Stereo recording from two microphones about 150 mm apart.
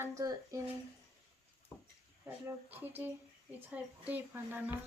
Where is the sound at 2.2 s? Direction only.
10° right (ahead or behind).